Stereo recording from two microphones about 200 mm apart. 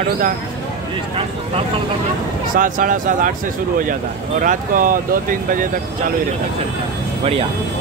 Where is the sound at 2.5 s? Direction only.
45° right (ahead or behind).